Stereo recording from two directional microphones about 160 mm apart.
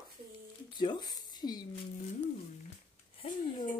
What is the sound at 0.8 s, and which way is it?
Speech, 25° left (ahead or behind).